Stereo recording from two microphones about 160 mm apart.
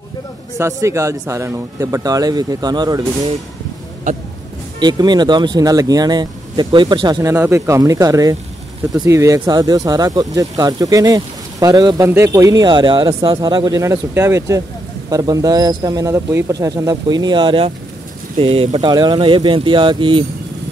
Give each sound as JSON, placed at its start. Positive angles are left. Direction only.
{"t": 0.6, "sound": "speech", "side_deg": -20}
{"t": 4.7, "sound": "speech", "side_deg": -25}